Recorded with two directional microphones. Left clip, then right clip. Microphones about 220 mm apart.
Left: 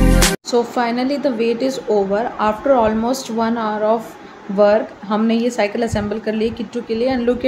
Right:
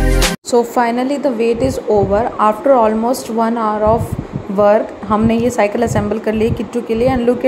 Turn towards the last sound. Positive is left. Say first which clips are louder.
# right 4 dB
turn(degrees=25)  # may be behind; listen again after turning